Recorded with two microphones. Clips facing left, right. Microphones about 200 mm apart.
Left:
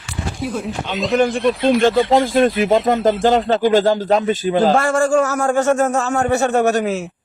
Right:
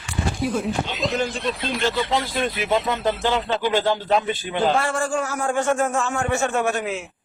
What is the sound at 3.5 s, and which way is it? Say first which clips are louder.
A man's voice: left 7 dB; 45° left (ahead or behind).